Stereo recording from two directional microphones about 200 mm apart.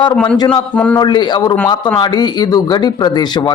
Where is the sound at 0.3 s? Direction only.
25° left (ahead or behind).